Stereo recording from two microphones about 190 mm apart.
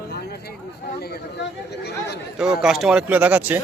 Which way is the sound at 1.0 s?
60° left (ahead or behind).